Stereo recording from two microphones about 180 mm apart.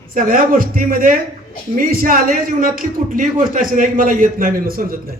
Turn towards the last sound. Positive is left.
turn(degrees=-50)  # may be behind; listen again after turning